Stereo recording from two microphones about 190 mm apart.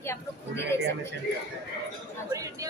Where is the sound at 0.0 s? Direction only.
15° left (ahead or behind).